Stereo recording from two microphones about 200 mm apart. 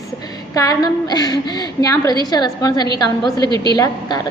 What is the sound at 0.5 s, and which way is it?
A woman's voice, 20° left (ahead or behind).